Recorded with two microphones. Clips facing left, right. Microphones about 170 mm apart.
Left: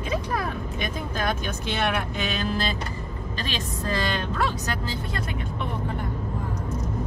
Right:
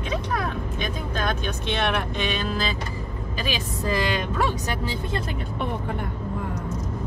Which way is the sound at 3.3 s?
10° right (ahead or behind).